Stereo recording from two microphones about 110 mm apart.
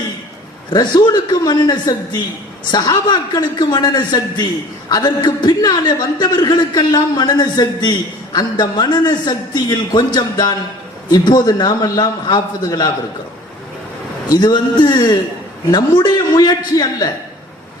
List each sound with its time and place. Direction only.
0.7 s a man's voice: 40° left (ahead or behind)
14.3 s a man's voice: 40° left (ahead or behind)